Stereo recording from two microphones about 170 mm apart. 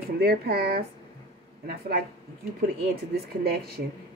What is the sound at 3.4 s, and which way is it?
Speech, 65° right (ahead or behind).